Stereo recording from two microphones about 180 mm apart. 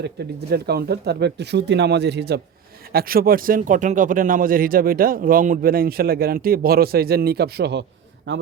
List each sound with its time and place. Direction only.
0.2 s speech: 70° right (ahead or behind)
2.9 s speech: 55° right (ahead or behind)